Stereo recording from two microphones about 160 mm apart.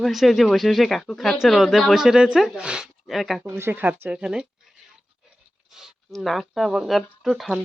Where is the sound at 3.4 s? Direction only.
15° right (ahead or behind).